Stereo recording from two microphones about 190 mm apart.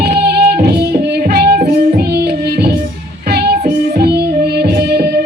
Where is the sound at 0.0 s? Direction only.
55° right (ahead or behind).